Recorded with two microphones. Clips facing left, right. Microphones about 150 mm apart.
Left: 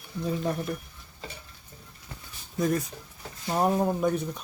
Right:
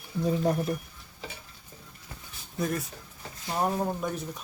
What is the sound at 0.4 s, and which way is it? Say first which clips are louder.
Speech: right 3 dB; 35° right (ahead or behind).